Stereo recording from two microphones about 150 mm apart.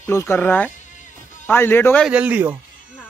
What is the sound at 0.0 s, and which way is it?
Speech, 15° left (ahead or behind).